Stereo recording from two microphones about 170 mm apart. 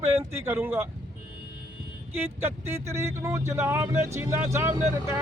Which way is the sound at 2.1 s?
15° right (ahead or behind).